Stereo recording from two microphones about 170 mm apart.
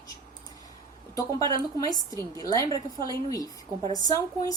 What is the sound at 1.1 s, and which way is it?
Speech, 20° left (ahead or behind).